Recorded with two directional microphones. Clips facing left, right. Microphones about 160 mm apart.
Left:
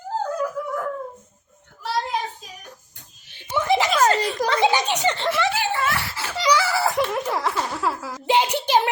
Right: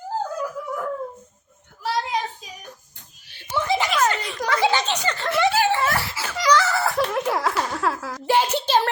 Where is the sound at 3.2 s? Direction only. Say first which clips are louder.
Left 2 dB; 20° left (ahead or behind).